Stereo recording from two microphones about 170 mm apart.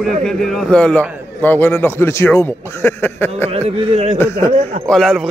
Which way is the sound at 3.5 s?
40° right (ahead or behind).